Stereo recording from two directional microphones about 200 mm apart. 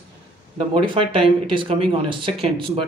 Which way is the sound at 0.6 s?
25° right (ahead or behind).